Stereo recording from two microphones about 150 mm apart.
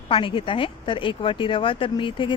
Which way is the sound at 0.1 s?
35° left (ahead or behind).